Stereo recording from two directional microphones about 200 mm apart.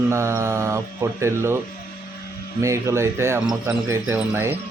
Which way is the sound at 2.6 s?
15° right (ahead or behind).